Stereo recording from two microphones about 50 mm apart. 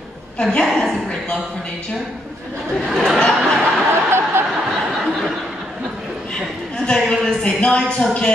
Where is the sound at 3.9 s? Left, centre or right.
Right.